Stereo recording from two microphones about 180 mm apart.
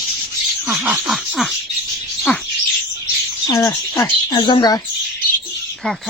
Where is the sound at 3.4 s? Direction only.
20° left (ahead or behind).